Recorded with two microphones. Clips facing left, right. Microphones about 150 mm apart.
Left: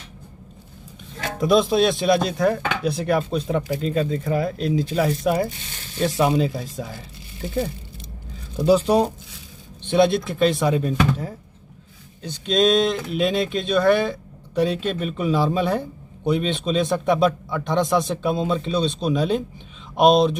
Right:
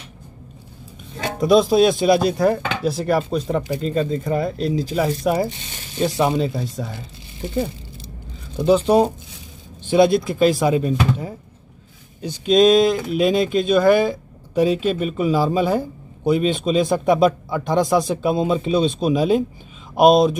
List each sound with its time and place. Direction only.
1.4 s speech: centre (ahead or behind)
5.9 s speech: 20° right (ahead or behind)
6.2 s speech: centre (ahead or behind)
8.5 s speech: centre (ahead or behind)